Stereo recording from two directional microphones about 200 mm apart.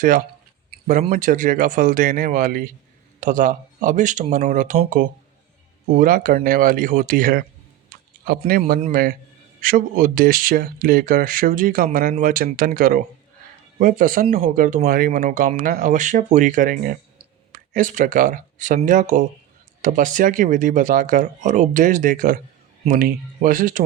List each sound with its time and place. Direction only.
1.1 s speech: 40° right (ahead or behind)
7.9 s a sound: 45° right (ahead or behind)
8.9 s speech: 45° right (ahead or behind)